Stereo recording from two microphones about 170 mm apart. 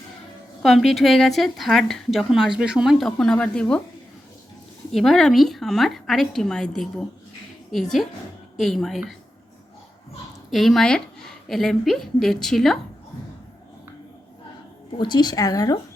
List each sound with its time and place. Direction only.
0.6 s a woman's voice: centre (ahead or behind)
4.9 s a woman's voice: centre (ahead or behind)
10.5 s a woman's voice: centre (ahead or behind)
14.9 s a woman's voice: 25° left (ahead or behind)